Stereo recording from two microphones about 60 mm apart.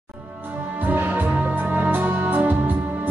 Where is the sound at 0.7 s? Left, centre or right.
Right.